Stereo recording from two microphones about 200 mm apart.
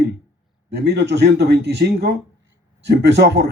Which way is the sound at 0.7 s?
55° right (ahead or behind).